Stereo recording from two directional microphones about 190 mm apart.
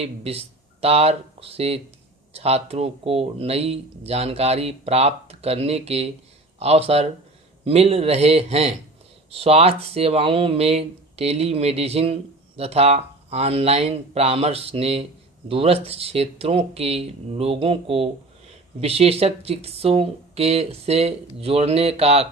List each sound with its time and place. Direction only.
0.0 s speech: 30° right (ahead or behind)